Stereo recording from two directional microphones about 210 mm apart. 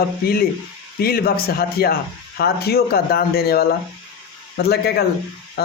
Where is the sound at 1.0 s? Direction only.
45° left (ahead or behind).